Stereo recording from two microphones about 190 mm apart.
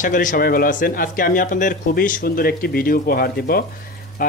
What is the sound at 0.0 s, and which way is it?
Speech, 45° left (ahead or behind).